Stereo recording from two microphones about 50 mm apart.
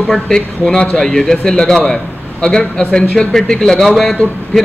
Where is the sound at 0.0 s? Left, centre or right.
Centre.